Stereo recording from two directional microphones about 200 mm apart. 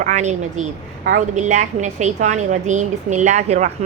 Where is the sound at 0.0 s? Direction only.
35° right (ahead or behind).